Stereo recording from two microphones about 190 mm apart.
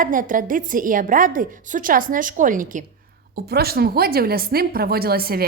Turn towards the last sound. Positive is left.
turn(degrees=-55)  # may be behind; listen again after turning